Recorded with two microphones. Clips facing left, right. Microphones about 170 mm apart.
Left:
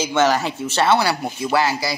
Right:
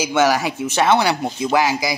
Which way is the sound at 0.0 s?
10° right (ahead or behind).